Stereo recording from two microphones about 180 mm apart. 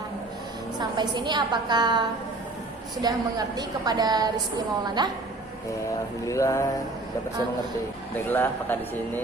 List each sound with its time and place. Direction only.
0.8 s a woman's voice: 25° right (ahead or behind)
6.2 s a man's voice: 15° left (ahead or behind)
8.3 s a man's voice: 10° left (ahead or behind)